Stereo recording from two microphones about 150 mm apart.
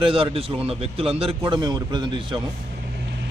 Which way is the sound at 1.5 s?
30° right (ahead or behind).